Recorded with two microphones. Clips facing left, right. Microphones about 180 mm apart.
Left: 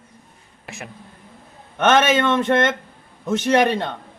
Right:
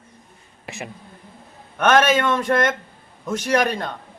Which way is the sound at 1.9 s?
25° left (ahead or behind).